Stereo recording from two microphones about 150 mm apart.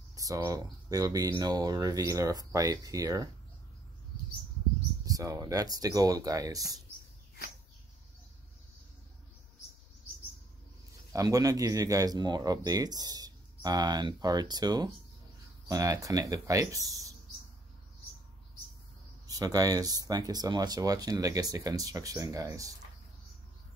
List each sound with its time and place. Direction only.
0.1 s speech: 20° right (ahead or behind)
5.0 s speech: 25° right (ahead or behind)
11.1 s speech: 25° right (ahead or behind)
19.2 s speech: 25° right (ahead or behind)